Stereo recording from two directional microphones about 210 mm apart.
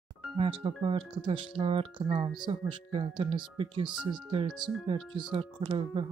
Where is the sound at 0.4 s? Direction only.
25° right (ahead or behind).